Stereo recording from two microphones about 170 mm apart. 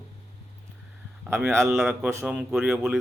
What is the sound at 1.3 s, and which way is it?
A man's voice, 15° right (ahead or behind).